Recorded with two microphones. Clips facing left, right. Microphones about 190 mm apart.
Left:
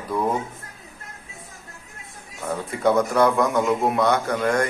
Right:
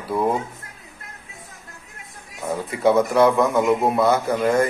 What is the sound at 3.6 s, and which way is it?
Speech, 25° right (ahead or behind).